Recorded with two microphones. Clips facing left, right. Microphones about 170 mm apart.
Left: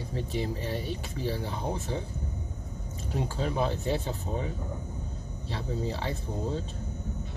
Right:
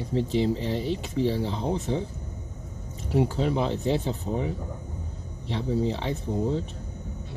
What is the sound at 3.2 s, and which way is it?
Speech, 20° right (ahead or behind).